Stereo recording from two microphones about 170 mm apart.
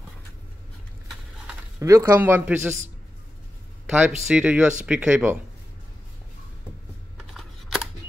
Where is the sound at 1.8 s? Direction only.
20° right (ahead or behind).